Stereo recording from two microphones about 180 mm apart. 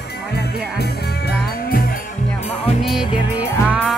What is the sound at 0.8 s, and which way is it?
Music, 60° left (ahead or behind).